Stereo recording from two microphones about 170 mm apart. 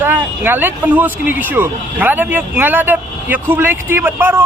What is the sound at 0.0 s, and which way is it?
Speech, 10° right (ahead or behind).